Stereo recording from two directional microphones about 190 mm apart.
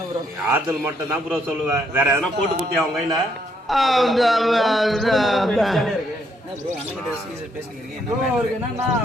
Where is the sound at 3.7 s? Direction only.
Centre (ahead or behind).